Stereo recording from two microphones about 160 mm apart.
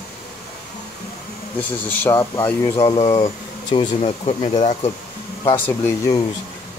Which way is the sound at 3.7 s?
35° left (ahead or behind).